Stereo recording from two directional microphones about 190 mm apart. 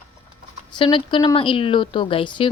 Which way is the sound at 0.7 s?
25° left (ahead or behind).